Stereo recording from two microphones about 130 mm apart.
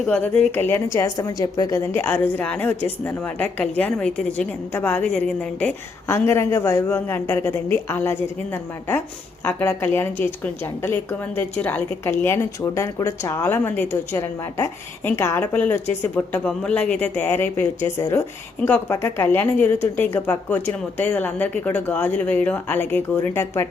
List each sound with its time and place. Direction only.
0.0 s a woman's voice: 10° left (ahead or behind)